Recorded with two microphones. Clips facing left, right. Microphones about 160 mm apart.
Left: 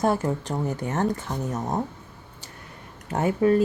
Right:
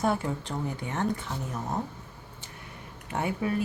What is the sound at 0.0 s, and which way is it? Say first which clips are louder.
Speech: left 5 dB; 45° left (ahead or behind).